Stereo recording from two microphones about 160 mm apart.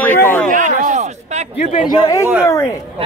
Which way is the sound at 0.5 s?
50° right (ahead or behind).